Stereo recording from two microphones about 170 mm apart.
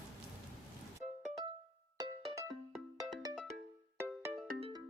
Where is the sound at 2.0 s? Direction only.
20° right (ahead or behind).